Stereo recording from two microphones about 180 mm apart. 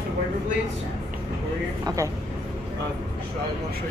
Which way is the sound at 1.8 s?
15° right (ahead or behind).